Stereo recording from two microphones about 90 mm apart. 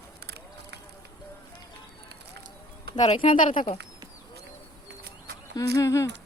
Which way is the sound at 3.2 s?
80° left.